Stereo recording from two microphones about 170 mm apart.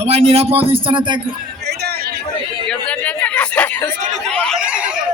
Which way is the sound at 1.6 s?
70° right (ahead or behind).